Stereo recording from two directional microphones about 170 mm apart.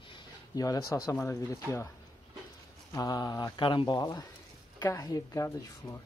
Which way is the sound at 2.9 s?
20° left (ahead or behind).